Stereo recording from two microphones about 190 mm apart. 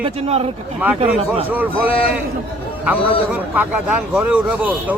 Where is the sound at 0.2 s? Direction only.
30° right (ahead or behind).